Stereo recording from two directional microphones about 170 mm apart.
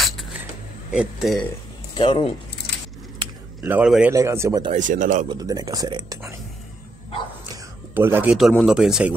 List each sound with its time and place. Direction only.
0.0 s a sound: centre (ahead or behind)
0.9 s speech: centre (ahead or behind)
2.0 s speech: 30° left (ahead or behind)
3.6 s a man's voice: 5° right (ahead or behind)
4.1 s speech: 15° right (ahead or behind)
4.7 s speech: 50° right (ahead or behind)
5.3 s speech: 20° right (ahead or behind)
7.9 s a man's voice: 10° right (ahead or behind)
8.4 s speech: centre (ahead or behind)